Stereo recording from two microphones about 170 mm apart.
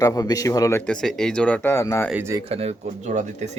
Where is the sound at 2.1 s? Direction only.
15° right (ahead or behind).